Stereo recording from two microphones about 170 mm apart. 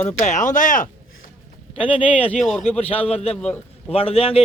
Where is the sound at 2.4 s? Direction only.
5° left (ahead or behind).